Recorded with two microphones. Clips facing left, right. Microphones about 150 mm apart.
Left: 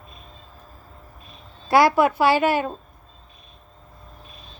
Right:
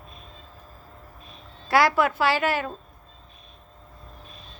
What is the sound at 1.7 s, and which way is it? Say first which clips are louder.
A woman's voice: left 4 dB; 15° left (ahead or behind).